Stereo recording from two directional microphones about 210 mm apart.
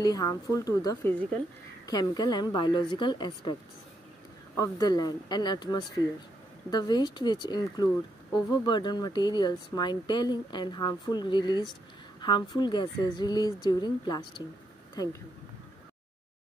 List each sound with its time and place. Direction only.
0.0 s a woman's voice: 20° left (ahead or behind)
4.6 s speech: 20° left (ahead or behind)